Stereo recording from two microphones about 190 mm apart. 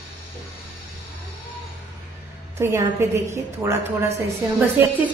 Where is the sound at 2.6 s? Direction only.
15° right (ahead or behind).